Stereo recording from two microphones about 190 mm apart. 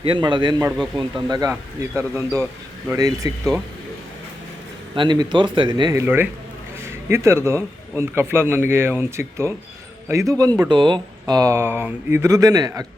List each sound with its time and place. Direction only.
0.0 s a man's voice: 25° right (ahead or behind)
4.9 s a man's voice: 20° right (ahead or behind)